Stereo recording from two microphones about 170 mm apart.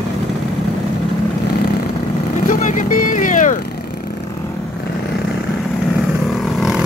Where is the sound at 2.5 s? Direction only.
50° left (ahead or behind).